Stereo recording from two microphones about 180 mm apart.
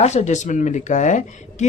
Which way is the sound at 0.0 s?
40° left (ahead or behind).